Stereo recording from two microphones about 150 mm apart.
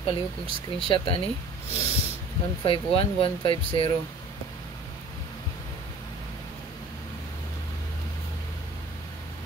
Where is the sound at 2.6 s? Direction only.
35° left (ahead or behind).